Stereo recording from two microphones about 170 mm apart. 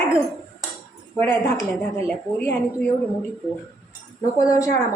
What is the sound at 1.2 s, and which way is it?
A woman's voice, 15° left (ahead or behind).